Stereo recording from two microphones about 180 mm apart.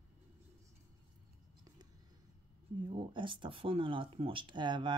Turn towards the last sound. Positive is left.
turn(degrees=-25)  # may be behind; listen again after turning